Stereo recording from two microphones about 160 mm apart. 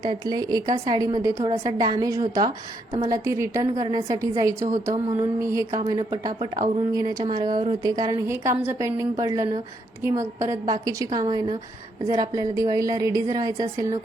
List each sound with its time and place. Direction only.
0.0 s speech: 25° right (ahead or behind)